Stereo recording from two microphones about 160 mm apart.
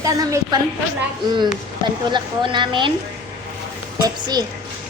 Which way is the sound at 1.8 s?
30° right (ahead or behind).